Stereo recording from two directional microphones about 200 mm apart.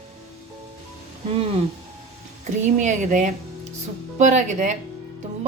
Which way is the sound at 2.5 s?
35° right (ahead or behind).